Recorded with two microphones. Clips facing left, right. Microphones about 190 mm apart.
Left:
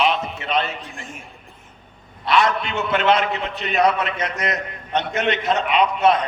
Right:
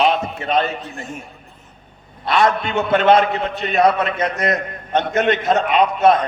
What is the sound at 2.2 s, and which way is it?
A man's voice, 50° right (ahead or behind).